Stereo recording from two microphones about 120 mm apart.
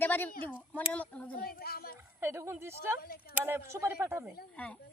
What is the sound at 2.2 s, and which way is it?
A woman's voice, 20° right (ahead or behind).